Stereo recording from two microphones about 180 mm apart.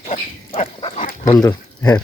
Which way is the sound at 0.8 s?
30° left (ahead or behind).